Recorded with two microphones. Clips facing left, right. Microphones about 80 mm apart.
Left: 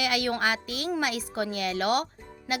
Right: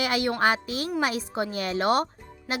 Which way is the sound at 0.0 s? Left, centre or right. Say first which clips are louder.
Right 3 dB; right.